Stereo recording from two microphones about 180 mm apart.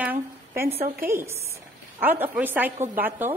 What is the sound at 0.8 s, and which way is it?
Speech, 55° right (ahead or behind).